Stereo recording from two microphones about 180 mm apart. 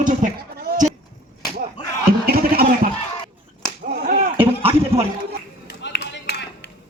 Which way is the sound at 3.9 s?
55° right (ahead or behind).